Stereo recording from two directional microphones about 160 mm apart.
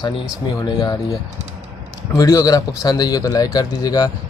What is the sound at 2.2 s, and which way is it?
Speech, 20° left (ahead or behind).